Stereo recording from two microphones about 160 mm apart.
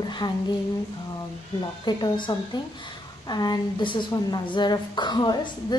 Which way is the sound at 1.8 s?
25° left (ahead or behind).